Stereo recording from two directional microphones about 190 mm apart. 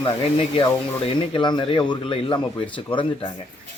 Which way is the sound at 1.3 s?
25° left (ahead or behind).